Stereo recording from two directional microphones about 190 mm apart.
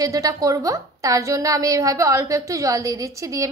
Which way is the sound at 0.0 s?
20° right (ahead or behind).